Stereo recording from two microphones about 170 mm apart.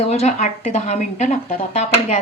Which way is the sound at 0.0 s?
40° left (ahead or behind).